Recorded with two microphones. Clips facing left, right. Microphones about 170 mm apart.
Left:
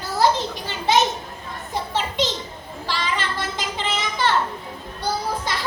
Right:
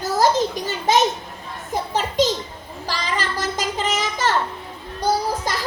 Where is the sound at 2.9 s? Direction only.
40° right (ahead or behind).